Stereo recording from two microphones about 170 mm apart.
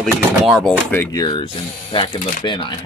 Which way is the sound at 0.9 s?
15° left (ahead or behind).